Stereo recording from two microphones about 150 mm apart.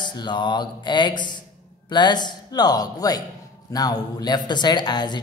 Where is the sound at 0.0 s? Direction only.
30° left (ahead or behind).